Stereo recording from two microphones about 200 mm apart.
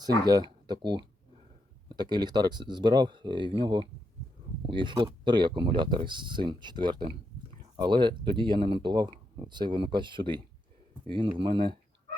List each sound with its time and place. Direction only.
0.0 s speech: 20° right (ahead or behind)